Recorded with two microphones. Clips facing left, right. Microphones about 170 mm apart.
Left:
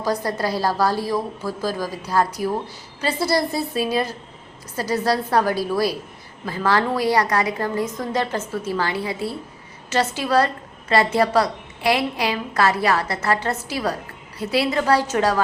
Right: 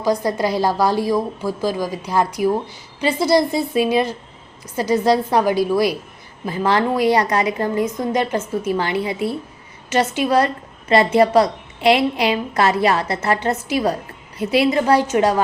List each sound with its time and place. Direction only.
0.0 s a woman's voice: 15° right (ahead or behind)